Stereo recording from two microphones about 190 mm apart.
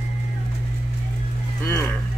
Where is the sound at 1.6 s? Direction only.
15° left (ahead or behind).